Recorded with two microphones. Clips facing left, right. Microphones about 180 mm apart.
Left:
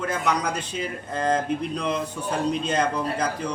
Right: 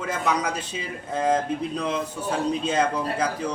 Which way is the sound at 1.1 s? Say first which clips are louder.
Right 1 dB; 5° right (ahead or behind).